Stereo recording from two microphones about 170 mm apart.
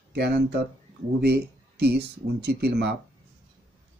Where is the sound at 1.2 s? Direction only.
70° right (ahead or behind).